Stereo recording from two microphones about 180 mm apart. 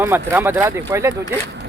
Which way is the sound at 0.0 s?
10° right (ahead or behind).